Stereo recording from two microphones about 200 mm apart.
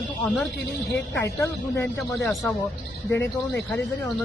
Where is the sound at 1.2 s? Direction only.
15° left (ahead or behind).